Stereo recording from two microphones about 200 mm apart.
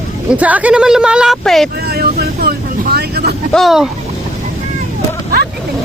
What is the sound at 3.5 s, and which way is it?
Speech, centre (ahead or behind).